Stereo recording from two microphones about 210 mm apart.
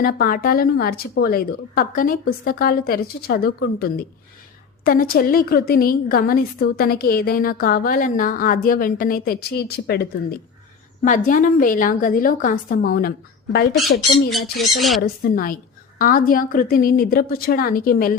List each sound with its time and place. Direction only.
0.0 s a woman's voice: 45° left (ahead or behind)
11.0 s a woman's voice: 40° left (ahead or behind)
14.8 s speech: centre (ahead or behind)
15.0 s a woman's voice: 45° left (ahead or behind)